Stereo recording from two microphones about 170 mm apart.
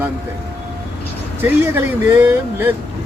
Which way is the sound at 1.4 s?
10° right (ahead or behind).